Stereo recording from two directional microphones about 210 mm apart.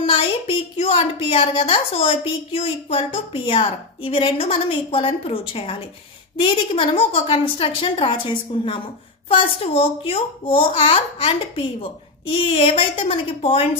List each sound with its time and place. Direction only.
0.0 s a woman's voice: 25° left (ahead or behind)